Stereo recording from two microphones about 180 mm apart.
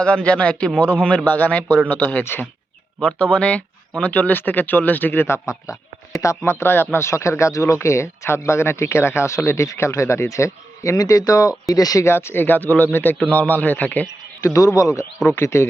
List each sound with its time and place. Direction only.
0.0 s a man's voice: 5° left (ahead or behind)